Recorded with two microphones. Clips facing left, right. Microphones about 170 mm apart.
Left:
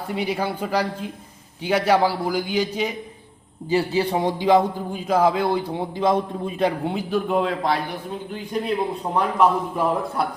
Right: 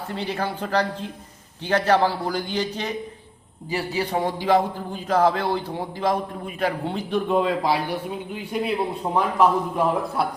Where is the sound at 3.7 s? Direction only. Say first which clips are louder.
Left 5 dB; 25° left (ahead or behind).